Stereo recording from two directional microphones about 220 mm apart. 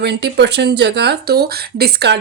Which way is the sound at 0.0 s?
50° right (ahead or behind).